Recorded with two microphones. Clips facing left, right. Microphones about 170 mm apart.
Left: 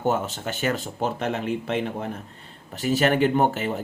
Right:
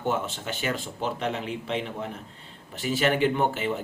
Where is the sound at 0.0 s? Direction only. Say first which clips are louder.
Left 4 dB; 40° left (ahead or behind).